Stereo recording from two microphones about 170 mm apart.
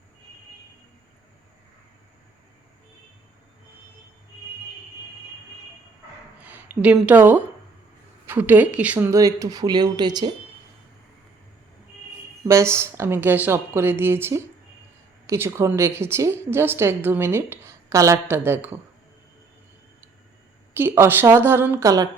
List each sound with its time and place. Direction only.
6.4 s speech: 10° right (ahead or behind); by 10.3 s 25° right (ahead or behind)
12.5 s a woman's voice: 15° right (ahead or behind)
20.7 s a woman's voice: 15° right (ahead or behind)